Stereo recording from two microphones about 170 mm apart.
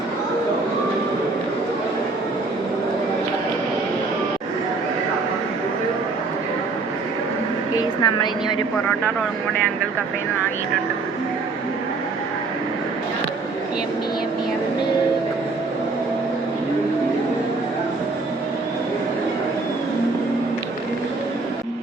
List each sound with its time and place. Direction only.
7.8 s a woman's voice: 25° left (ahead or behind)